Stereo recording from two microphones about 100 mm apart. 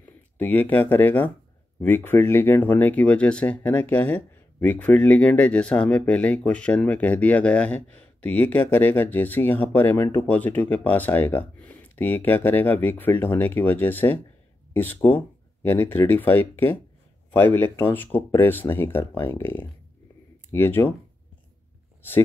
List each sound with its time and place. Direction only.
0.0 s speech: 20° left (ahead or behind)
10.2 s speech: 15° left (ahead or behind)